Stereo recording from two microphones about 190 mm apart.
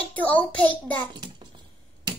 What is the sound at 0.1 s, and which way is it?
Speech, 10° left (ahead or behind).